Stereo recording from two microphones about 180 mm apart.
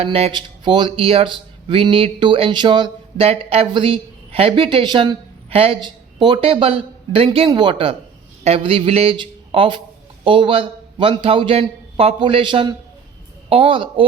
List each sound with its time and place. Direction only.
0.0 s speech: 30° right (ahead or behind)